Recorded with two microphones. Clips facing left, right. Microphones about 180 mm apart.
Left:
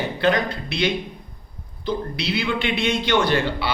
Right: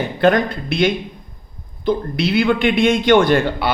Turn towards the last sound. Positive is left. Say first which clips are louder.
# right 6 dB
turn(degrees=-50)  # may be behind; listen again after turning